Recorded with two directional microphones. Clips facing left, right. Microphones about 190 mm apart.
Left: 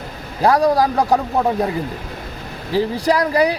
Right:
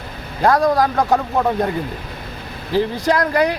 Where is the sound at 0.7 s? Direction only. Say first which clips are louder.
Even; 35° left (ahead or behind).